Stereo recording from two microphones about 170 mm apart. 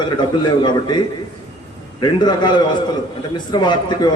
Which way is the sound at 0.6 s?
25° left (ahead or behind).